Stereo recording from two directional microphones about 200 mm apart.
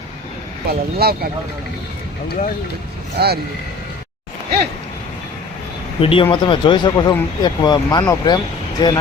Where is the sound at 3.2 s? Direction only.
55° right (ahead or behind).